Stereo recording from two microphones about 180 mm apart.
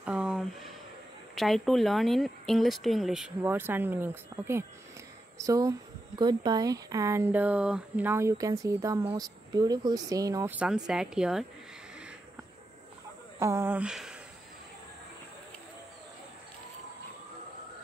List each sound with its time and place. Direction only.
0.0 s a sound: 5° right (ahead or behind)
1.3 s speech: centre (ahead or behind)
13.4 s speech: 15° right (ahead or behind)